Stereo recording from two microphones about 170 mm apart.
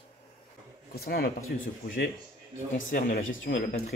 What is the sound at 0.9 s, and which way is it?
Speech, 65° left (ahead or behind).